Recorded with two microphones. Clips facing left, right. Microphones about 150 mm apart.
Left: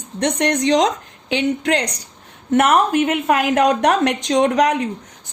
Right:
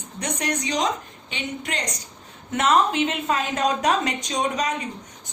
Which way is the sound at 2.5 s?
60° left (ahead or behind).